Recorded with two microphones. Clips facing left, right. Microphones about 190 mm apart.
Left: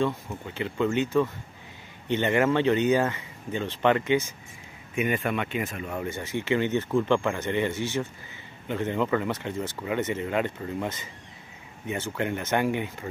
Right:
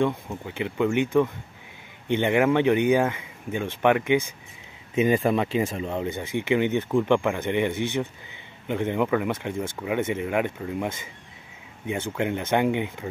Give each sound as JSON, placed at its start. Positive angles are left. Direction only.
{"t": 0.0, "sound": "speech", "side_deg": -15}
{"t": 4.9, "sound": "speech", "side_deg": -30}
{"t": 12.2, "sound": "speech", "side_deg": -15}